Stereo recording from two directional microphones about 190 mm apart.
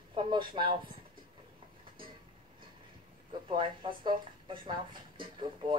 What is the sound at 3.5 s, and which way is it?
Speech, 25° right (ahead or behind).